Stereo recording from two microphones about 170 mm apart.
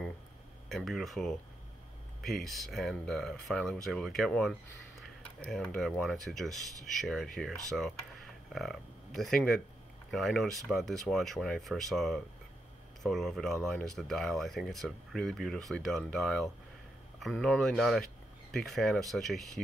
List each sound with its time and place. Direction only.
0.7 s speech: centre (ahead or behind)